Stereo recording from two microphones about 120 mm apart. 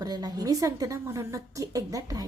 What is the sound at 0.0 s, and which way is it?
A woman's voice, 30° right (ahead or behind).